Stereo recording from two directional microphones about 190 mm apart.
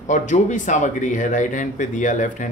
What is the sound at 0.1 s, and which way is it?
Speech, 40° left (ahead or behind).